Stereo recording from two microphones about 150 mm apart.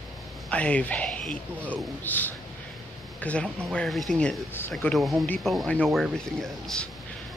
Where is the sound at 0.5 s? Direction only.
10° left (ahead or behind).